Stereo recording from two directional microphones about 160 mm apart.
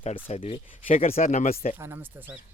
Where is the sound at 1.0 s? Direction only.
55° left (ahead or behind).